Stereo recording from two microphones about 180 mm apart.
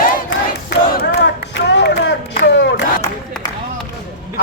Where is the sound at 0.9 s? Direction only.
70° left (ahead or behind).